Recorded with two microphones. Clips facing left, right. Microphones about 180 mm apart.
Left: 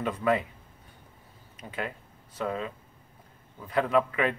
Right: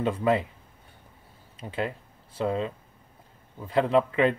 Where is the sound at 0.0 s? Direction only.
25° right (ahead or behind).